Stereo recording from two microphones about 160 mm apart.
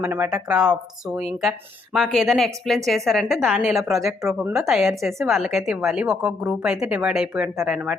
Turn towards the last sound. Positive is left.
turn(degrees=-5)  # may be behind; listen again after turning